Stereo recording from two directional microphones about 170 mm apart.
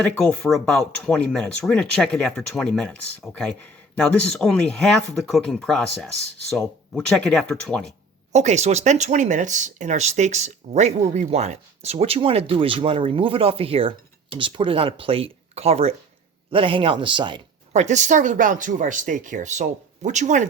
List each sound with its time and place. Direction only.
0.0 s speech: 5° left (ahead or behind)
8.3 s speech: 40° right (ahead or behind)
17.7 s speech: 45° right (ahead or behind)